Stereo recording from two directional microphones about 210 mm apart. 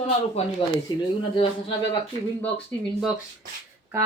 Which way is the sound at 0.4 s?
30° left (ahead or behind).